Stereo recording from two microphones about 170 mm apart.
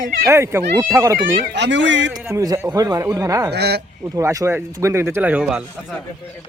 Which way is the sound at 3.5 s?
75° right (ahead or behind).